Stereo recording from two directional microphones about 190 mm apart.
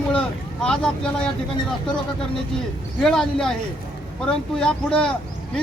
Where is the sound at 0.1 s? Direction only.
5° left (ahead or behind).